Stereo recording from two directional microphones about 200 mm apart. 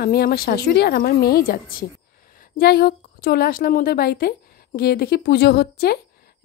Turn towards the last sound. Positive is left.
turn(degrees=50)  # may be behind; listen again after turning